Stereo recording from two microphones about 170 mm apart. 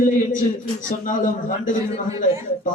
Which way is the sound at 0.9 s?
50° left (ahead or behind).